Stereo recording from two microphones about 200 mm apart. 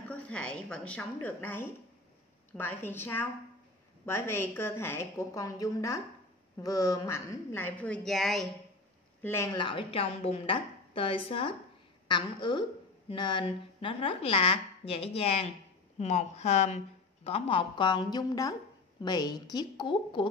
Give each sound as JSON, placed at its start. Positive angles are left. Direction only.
{"t": 0.1, "sound": "a woman's voice", "side_deg": 5}
{"t": 9.2, "sound": "a woman's voice", "side_deg": 15}